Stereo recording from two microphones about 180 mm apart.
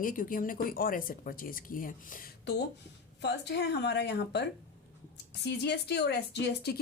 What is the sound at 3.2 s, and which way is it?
Speech, 70° left (ahead or behind).